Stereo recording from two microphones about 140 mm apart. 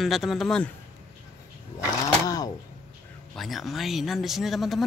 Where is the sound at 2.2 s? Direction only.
25° left (ahead or behind).